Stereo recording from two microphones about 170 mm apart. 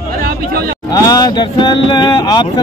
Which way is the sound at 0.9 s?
20° left (ahead or behind).